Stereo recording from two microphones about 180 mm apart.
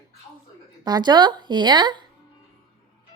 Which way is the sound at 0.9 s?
25° right (ahead or behind).